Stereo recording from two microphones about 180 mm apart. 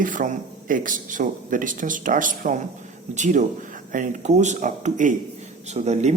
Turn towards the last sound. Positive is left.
turn(degrees=-40)  # may be behind; listen again after turning